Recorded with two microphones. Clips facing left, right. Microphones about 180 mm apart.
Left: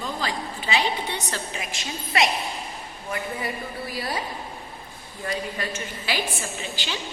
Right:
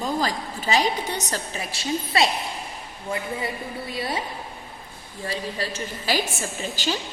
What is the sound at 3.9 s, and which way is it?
Speech, 25° right (ahead or behind).